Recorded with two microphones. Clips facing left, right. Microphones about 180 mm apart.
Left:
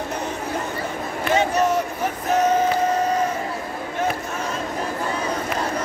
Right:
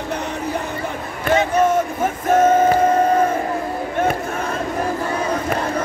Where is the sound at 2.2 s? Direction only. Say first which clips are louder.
Right 5 dB; 50° right (ahead or behind).